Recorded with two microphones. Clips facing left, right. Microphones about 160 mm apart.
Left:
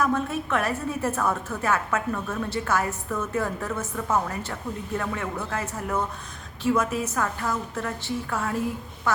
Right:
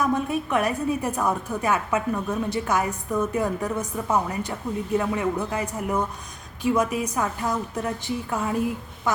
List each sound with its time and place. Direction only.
0.0 s a woman's voice: 15° right (ahead or behind)